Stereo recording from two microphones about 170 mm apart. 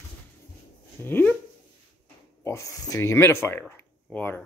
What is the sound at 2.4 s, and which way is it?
Speech, 20° left (ahead or behind).